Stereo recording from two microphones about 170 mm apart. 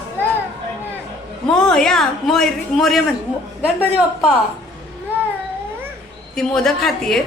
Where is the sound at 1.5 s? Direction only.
5° left (ahead or behind).